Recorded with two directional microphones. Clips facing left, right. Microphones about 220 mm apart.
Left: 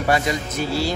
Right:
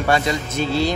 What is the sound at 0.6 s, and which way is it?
Speech, 20° right (ahead or behind).